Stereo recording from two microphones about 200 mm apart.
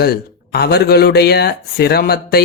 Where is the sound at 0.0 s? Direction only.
50° left (ahead or behind).